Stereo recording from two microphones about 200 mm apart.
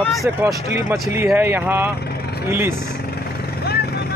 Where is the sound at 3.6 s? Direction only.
50° left (ahead or behind).